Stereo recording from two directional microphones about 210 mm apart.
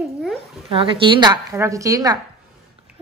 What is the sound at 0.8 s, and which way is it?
A woman's voice, 25° right (ahead or behind).